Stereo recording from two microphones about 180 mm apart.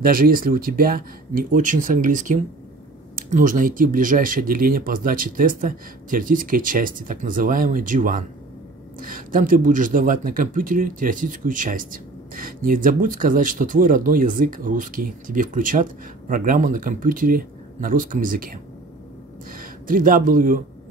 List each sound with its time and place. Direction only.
0.0 s speech: 50° right (ahead or behind)